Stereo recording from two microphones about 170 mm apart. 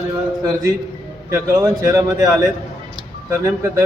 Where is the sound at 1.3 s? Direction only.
15° right (ahead or behind).